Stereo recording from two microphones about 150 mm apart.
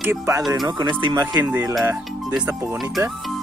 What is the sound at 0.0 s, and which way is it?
Speech, 15° right (ahead or behind).